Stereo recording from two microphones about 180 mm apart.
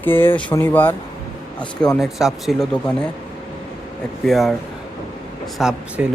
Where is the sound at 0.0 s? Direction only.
10° left (ahead or behind).